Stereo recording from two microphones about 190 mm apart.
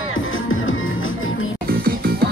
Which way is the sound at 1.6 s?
55° right (ahead or behind).